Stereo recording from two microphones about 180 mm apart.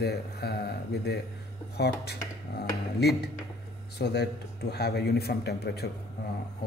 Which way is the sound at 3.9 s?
65° left (ahead or behind).